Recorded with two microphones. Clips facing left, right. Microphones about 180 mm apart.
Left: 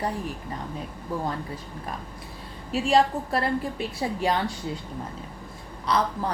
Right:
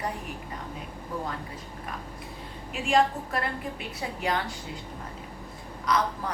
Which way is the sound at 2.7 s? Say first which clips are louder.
Left 3 dB; 35° left (ahead or behind).